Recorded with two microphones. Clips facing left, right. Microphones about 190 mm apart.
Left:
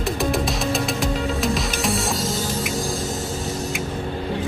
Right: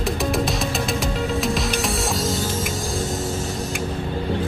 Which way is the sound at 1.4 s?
Centre (ahead or behind).